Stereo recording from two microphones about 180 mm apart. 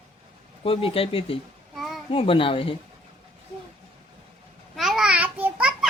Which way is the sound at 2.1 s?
30° left (ahead or behind).